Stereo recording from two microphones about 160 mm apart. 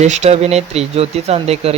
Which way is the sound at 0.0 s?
45° right (ahead or behind).